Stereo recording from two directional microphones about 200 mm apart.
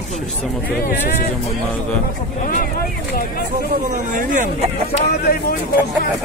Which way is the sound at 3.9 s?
40° right (ahead or behind).